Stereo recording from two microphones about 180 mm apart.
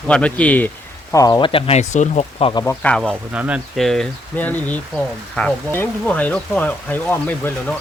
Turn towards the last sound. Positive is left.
turn(degrees=10)  # may be behind; listen again after turning